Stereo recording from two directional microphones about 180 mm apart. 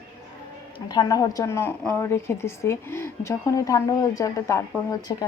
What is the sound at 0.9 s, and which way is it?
A woman's voice, 20° left (ahead or behind).